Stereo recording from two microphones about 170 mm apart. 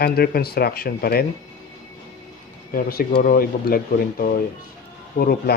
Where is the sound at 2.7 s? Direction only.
60° left (ahead or behind).